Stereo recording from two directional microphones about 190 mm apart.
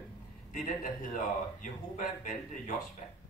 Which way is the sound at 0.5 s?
40° left (ahead or behind).